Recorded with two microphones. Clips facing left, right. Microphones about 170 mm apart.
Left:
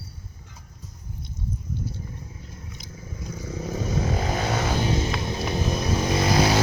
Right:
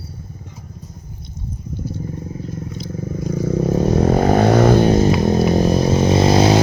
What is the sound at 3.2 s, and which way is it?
Vehicle, 55° right (ahead or behind).